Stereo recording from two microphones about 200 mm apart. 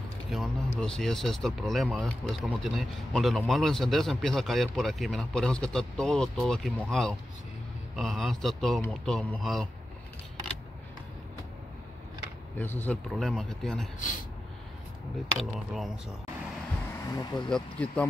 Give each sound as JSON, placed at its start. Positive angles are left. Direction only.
{"t": 0.3, "sound": "speech", "side_deg": 0}
{"t": 12.5, "sound": "speech", "side_deg": 10}
{"t": 15.3, "sound": "speech", "side_deg": 0}
{"t": 17.0, "sound": "speech", "side_deg": 20}
{"t": 17.5, "sound": "speech", "side_deg": 5}